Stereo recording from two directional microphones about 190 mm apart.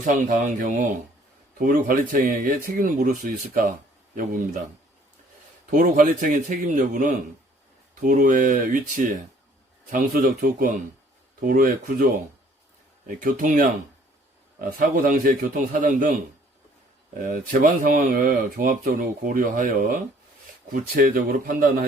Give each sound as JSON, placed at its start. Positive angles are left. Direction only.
{"t": 0.0, "sound": "speech", "side_deg": -45}
{"t": 5.7, "sound": "speech", "side_deg": -45}
{"t": 13.1, "sound": "speech", "side_deg": -45}
{"t": 17.2, "sound": "speech", "side_deg": -45}